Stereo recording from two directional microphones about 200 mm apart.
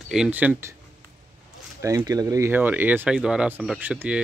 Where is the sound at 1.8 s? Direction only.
15° right (ahead or behind).